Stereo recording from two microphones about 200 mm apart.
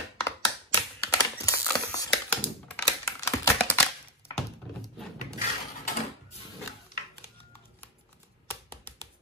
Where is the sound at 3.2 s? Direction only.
15° left (ahead or behind).